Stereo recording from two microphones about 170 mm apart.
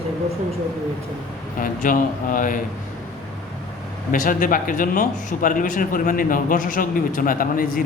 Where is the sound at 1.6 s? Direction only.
50° left (ahead or behind).